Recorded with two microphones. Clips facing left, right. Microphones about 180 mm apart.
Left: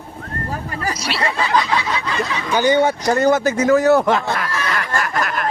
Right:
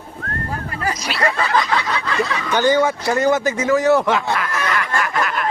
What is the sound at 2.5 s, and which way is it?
Speech, 10° left (ahead or behind).